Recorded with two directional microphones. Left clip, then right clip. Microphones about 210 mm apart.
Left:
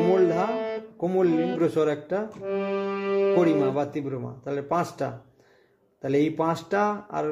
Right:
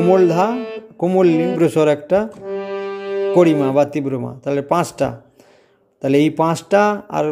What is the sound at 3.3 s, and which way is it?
A man's voice, 35° right (ahead or behind).